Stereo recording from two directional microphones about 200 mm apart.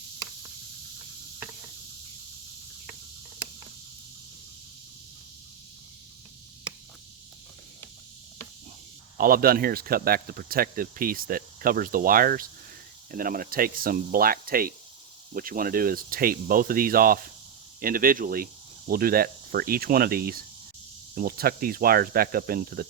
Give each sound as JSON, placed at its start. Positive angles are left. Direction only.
{"t": 9.1, "sound": "speech", "side_deg": -45}